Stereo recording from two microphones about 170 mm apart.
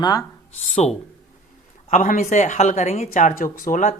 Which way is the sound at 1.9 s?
45° left (ahead or behind).